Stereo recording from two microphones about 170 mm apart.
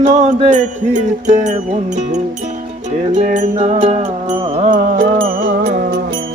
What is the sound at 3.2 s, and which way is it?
Mantra, 45° right (ahead or behind).